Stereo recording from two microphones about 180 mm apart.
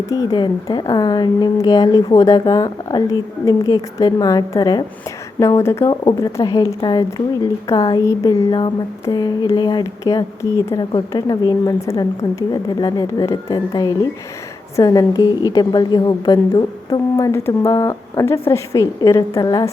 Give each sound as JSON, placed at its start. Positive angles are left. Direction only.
{"t": 0.1, "sound": "a woman's voice", "side_deg": 20}